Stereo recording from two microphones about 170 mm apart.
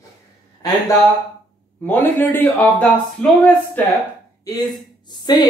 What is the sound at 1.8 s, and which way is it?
Speech, 10° left (ahead or behind).